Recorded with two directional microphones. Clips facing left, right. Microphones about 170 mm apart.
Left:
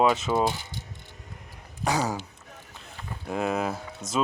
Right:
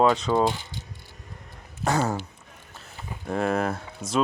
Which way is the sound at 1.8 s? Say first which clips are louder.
Right 2 dB; centre (ahead or behind).